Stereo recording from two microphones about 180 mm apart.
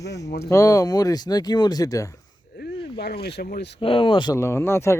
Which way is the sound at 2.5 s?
70° left (ahead or behind).